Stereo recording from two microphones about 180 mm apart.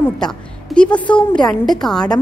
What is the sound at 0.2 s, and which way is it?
A woman's voice, 5° left (ahead or behind).